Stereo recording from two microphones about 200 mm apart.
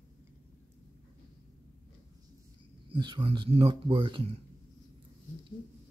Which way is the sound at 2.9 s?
25° right (ahead or behind).